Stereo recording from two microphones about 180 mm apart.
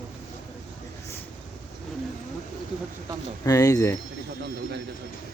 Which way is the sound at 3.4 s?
20° left (ahead or behind).